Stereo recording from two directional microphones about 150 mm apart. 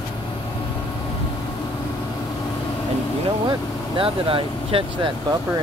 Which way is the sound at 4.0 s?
35° right (ahead or behind).